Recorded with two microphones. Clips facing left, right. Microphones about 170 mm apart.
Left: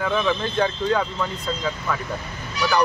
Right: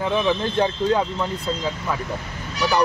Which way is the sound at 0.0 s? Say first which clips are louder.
Right 1 dB; 20° right (ahead or behind).